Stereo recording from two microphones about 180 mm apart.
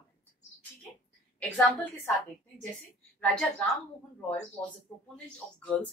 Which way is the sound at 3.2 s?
5° left (ahead or behind).